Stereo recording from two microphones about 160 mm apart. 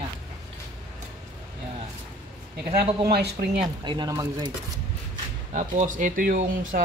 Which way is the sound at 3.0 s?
75° right (ahead or behind).